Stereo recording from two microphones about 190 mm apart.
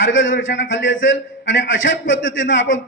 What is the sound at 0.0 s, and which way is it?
A man's voice, 80° left.